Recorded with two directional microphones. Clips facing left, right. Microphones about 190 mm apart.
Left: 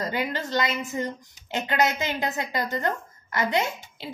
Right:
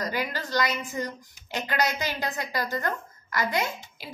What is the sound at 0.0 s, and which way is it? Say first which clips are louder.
A woman's voice: left 2 dB; 25° left (ahead or behind).